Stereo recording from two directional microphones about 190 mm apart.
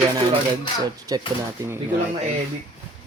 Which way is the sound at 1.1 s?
20° right (ahead or behind).